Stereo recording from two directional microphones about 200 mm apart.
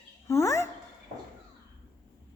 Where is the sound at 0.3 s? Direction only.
15° left (ahead or behind).